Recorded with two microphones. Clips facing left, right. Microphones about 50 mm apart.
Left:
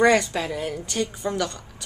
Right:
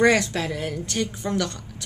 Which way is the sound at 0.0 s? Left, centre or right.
Centre.